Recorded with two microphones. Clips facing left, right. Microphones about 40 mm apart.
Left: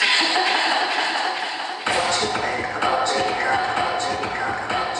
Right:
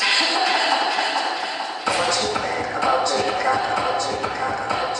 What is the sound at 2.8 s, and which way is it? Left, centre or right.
Speech, left.